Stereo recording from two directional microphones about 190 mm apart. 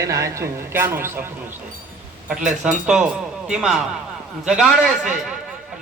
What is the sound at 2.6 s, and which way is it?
A man's voice, 5° right (ahead or behind).